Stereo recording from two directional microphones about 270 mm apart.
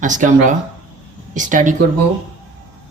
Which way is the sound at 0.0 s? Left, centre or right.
Right.